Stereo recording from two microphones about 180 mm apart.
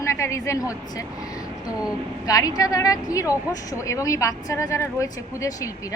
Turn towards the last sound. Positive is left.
turn(degrees=20)  # may be behind; listen again after turning